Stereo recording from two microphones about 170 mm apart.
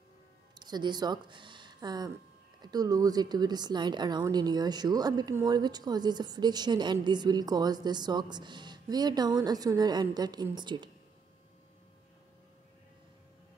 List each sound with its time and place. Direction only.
0.6 s speech: 25° right (ahead or behind)